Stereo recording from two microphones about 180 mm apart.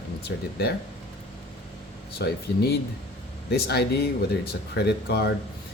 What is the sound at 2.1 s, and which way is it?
Speech, 60° left (ahead or behind).